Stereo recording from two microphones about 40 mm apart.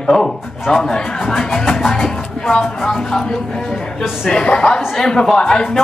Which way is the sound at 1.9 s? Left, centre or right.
Centre.